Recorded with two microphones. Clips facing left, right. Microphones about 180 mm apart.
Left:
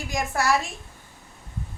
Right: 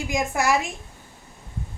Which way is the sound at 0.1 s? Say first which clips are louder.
Right 1 dB; 20° right (ahead or behind).